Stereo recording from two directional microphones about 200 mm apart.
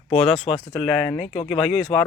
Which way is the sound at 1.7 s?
Centre (ahead or behind).